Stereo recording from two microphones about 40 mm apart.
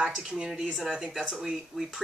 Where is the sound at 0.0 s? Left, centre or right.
Centre.